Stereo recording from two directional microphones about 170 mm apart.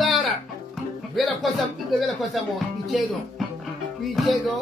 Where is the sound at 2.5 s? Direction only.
Centre (ahead or behind).